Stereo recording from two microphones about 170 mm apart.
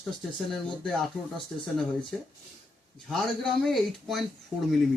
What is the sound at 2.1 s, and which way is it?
Speech, centre (ahead or behind).